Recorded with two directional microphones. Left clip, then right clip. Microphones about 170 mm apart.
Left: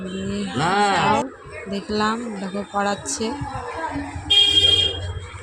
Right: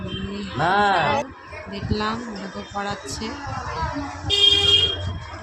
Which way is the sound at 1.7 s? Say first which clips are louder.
Left 4 dB; 30° left (ahead or behind).